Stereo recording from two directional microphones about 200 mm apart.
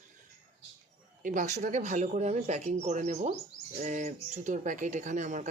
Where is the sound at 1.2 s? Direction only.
40° right (ahead or behind).